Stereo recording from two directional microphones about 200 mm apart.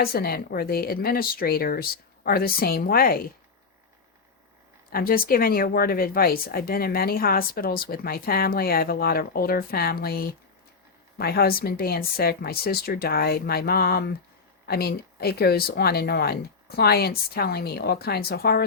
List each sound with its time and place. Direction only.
0.0 s speech: 50° left (ahead or behind)
4.9 s speech: 45° left (ahead or behind)